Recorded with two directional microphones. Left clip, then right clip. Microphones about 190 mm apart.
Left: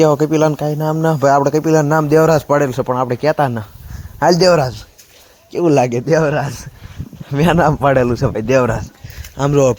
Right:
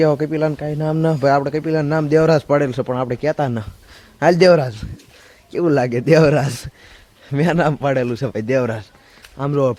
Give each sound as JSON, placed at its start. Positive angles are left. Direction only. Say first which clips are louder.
{"t": 0.0, "sound": "a man's voice", "louder": "left 5 dB", "side_deg": 10}
{"t": 0.8, "sound": "speech", "louder": "left 1 dB", "side_deg": 0}
{"t": 1.3, "sound": "a man's voice", "louder": "left 7 dB", "side_deg": 10}
{"t": 6.1, "sound": "speech", "louder": "right 1 dB", "side_deg": -35}
{"t": 7.3, "sound": "speech", "louder": "left 4 dB", "side_deg": -5}
{"t": 7.5, "sound": "speech", "louder": "left 6 dB", "side_deg": 5}
{"t": 8.1, "sound": "speech", "louder": "left 5 dB", "side_deg": -5}
{"t": 9.2, "sound": "speech", "louder": "left 5 dB", "side_deg": 15}